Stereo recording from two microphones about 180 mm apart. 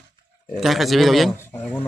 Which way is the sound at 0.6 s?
Centre (ahead or behind).